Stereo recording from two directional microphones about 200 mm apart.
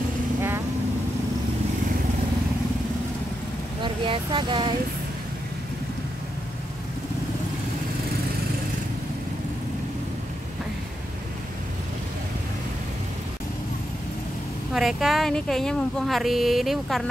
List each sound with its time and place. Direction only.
3.8 s speech: 25° right (ahead or behind)
14.7 s speech: centre (ahead or behind)